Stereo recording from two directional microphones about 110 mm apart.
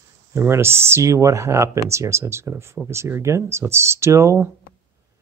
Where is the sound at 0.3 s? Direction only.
20° right (ahead or behind).